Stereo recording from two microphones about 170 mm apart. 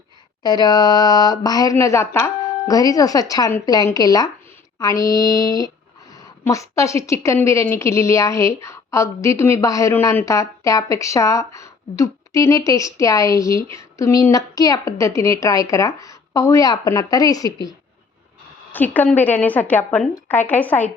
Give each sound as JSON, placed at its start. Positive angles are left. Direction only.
{"t": 0.4, "sound": "a woman's voice", "side_deg": 25}
{"t": 18.7, "sound": "a woman's voice", "side_deg": 10}